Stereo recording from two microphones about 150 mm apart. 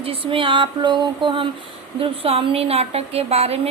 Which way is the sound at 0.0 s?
35° right (ahead or behind).